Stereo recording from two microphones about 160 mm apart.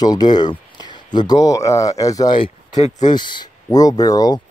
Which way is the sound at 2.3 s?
35° left (ahead or behind).